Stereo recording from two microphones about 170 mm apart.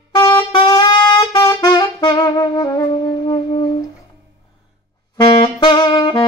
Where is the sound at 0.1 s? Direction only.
25° left (ahead or behind).